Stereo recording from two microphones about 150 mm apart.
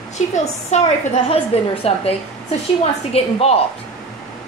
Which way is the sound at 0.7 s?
50° left (ahead or behind).